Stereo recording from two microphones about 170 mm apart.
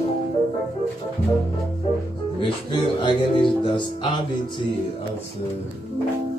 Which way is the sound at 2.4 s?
30° left (ahead or behind).